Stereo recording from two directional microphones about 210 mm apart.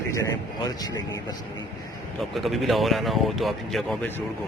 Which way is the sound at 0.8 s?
15° left (ahead or behind).